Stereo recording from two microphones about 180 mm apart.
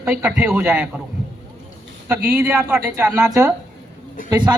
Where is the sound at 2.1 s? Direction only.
10° right (ahead or behind).